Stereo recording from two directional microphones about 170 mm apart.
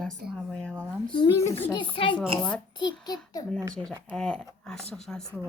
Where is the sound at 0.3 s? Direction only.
5° left (ahead or behind).